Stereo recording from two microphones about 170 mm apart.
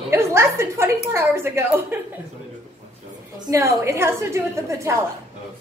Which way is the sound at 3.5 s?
15° right (ahead or behind).